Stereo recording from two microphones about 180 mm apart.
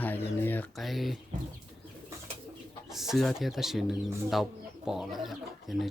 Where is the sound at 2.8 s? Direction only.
Centre (ahead or behind).